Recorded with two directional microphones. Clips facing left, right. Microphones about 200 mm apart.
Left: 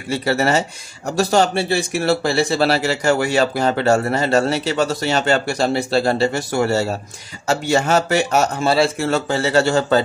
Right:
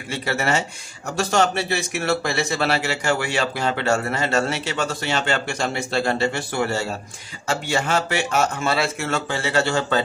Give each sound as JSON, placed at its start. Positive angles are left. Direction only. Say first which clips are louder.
{"t": 0.1, "sound": "speech", "louder": "left 5 dB", "side_deg": 35}